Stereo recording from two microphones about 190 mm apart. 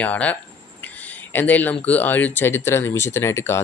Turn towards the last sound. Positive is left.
turn(degrees=15)  # may be behind; listen again after turning